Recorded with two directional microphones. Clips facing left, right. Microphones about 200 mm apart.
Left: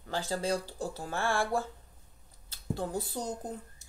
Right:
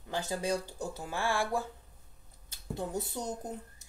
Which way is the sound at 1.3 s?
Centre (ahead or behind).